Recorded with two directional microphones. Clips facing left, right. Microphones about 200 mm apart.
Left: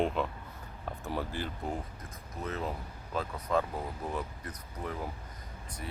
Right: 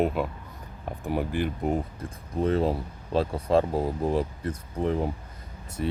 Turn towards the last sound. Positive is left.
turn(degrees=-25)  # may be behind; listen again after turning